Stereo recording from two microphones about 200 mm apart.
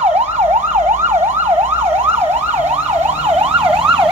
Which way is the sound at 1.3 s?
10° right (ahead or behind).